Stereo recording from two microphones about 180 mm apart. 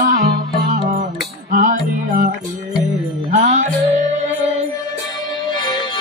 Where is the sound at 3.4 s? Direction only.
45° right (ahead or behind).